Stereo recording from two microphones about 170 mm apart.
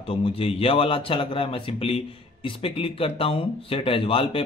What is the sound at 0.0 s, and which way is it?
A man's voice, 35° left (ahead or behind).